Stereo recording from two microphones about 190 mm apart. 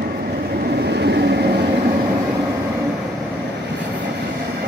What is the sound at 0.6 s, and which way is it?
Vehicle, 60° right (ahead or behind).